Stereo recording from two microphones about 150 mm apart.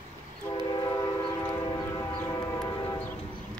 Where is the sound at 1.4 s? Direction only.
20° left (ahead or behind).